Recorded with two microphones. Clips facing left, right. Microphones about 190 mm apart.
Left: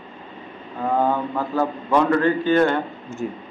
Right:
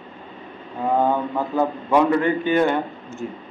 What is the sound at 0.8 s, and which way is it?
A man's voice, 15° right (ahead or behind).